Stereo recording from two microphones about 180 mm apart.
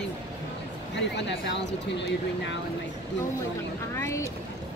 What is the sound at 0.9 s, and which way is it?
Speech, 80° left.